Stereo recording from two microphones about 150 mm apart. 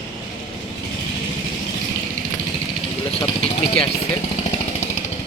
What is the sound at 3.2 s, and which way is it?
Vehicle, 40° left (ahead or behind).